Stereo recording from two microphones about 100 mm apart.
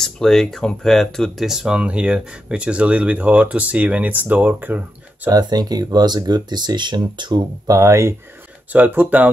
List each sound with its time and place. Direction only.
0.0 s speech: 5° left (ahead or behind); by 5.3 s 15° right (ahead or behind)
5.3 s speech: 45° right (ahead or behind)
8.7 s speech: 15° right (ahead or behind)